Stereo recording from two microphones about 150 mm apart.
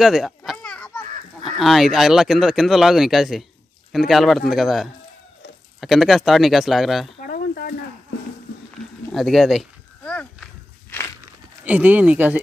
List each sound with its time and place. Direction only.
0.0 s speech: 5° right (ahead or behind)
0.4 s children playing: 5° left (ahead or behind)
1.6 s speech: centre (ahead or behind)
7.2 s a sound: 70° left (ahead or behind)
9.1 s walk: centre (ahead or behind)
11.6 s speech: 10° right (ahead or behind)